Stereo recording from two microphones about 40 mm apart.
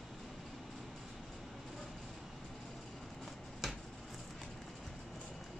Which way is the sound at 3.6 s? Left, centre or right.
Centre.